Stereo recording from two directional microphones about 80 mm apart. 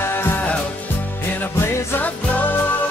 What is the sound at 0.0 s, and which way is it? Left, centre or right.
Music, left.